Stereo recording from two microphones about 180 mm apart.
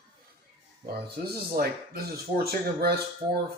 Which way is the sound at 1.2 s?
55° right (ahead or behind).